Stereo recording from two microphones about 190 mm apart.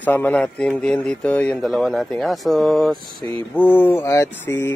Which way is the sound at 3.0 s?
20° left (ahead or behind).